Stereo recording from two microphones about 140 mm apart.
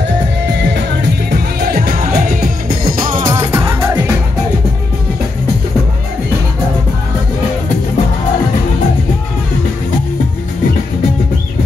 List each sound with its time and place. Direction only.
1.3 s music: 90° right
3.2 s music: 30° right (ahead or behind)
3.5 s music: 15° right (ahead or behind)